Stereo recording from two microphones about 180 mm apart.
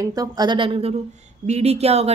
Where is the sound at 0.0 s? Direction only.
20° right (ahead or behind).